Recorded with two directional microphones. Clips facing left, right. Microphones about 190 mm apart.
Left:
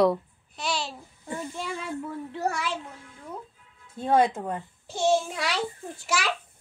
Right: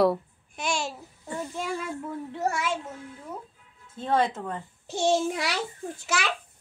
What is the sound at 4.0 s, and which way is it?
Speech, 15° left (ahead or behind).